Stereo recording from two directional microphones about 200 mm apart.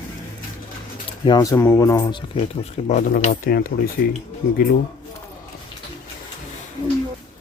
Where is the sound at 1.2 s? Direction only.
20° left (ahead or behind).